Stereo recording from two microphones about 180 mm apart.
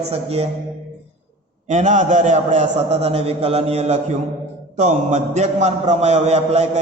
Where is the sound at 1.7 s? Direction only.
40° right (ahead or behind).